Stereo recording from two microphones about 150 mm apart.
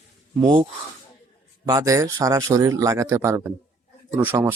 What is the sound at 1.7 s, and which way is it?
Speech, 25° right (ahead or behind).